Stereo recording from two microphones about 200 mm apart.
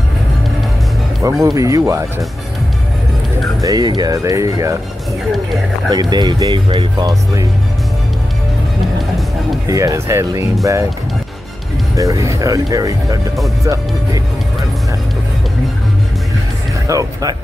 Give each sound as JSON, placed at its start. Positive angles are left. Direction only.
{"t": 1.4, "sound": "speech", "side_deg": -15}
{"t": 3.6, "sound": "speech", "side_deg": -20}
{"t": 5.2, "sound": "speech", "side_deg": 0}
{"t": 5.9, "sound": "speech", "side_deg": -20}
{"t": 9.7, "sound": "speech", "side_deg": -15}
{"t": 12.0, "sound": "speech", "side_deg": -15}
{"t": 16.8, "sound": "speech", "side_deg": -15}